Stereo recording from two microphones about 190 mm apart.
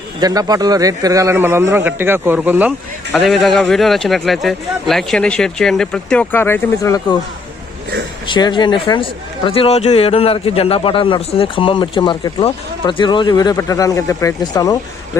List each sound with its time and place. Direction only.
0.2 s a man's voice: 20° right (ahead or behind)
3.1 s speech: centre (ahead or behind)
8.3 s speech: 25° left (ahead or behind)